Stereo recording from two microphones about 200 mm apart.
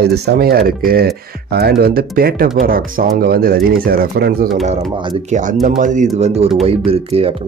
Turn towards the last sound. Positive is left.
turn(degrees=-30)  # may be behind; listen again after turning